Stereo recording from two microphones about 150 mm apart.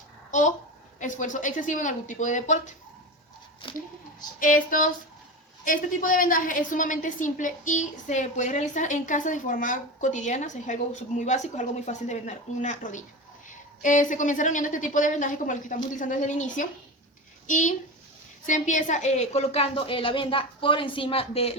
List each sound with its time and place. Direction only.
0.3 s a child's voice: 55° left (ahead or behind)
4.4 s a woman's voice: 65° left (ahead or behind); by 21.5 s 40° left (ahead or behind)